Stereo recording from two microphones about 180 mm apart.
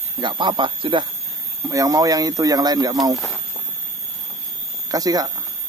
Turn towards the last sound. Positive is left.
turn(degrees=-20)  # may be behind; listen again after turning